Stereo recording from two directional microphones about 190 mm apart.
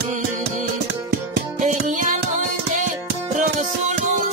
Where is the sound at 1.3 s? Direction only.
40° right (ahead or behind).